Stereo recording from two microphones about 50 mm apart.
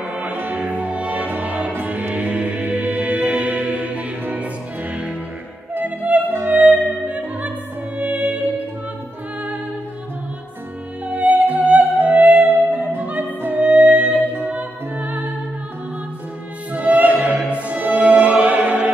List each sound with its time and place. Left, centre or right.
0.0 s music: right
5.9 s music: right
6.5 s opera: right
8.0 s music: right
11.1 s music: right
12.4 s music: right
13.6 s music: right
16.7 s music: right